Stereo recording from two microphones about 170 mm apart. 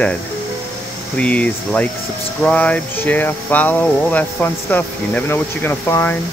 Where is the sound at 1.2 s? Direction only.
10° left (ahead or behind).